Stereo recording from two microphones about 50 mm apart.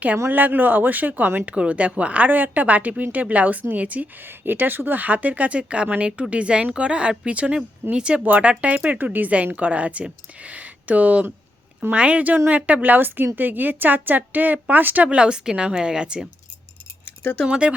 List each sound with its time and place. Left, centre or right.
0.3 s speech: right
4.2 s speech: right
15.1 s a woman's voice: centre
17.1 s a sound: left
17.5 s speech: right